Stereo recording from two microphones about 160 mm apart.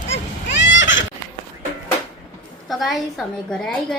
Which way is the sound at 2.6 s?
Centre (ahead or behind).